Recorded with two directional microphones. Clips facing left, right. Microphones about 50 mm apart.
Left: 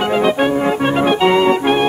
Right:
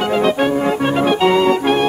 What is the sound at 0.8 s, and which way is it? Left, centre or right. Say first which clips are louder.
Music: left 1 dB; left.